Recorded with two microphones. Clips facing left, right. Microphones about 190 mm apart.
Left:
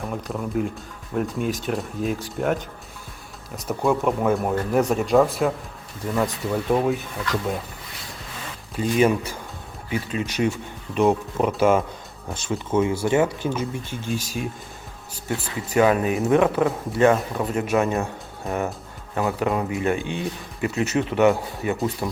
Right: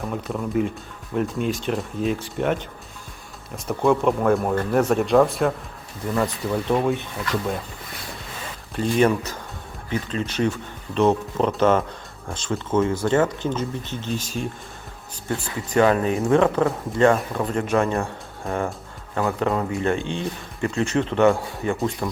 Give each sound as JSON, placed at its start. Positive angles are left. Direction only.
{"t": 0.0, "sound": "speech", "side_deg": 0}
{"t": 3.7, "sound": "speech", "side_deg": 0}
{"t": 8.7, "sound": "speech", "side_deg": 5}
{"t": 15.7, "sound": "speech", "side_deg": 10}
{"t": 18.4, "sound": "speech", "side_deg": 5}